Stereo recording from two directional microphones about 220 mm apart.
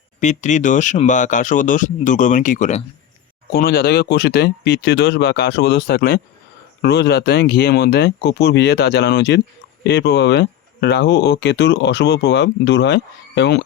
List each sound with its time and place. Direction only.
0.2 s speech: 35° left (ahead or behind)
3.5 s speech: 45° left (ahead or behind)